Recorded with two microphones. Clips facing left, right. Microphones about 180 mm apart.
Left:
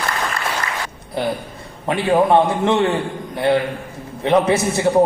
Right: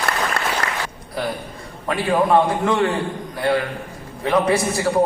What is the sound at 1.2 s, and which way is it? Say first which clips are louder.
A man's voice: left 3 dB; 25° left (ahead or behind).